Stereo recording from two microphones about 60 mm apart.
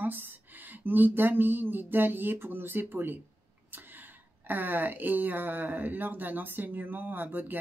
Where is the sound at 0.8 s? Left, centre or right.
Right.